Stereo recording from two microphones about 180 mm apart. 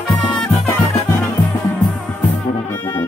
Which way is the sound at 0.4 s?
15° left (ahead or behind).